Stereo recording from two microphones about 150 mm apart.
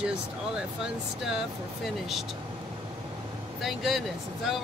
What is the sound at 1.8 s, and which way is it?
Speech, centre (ahead or behind).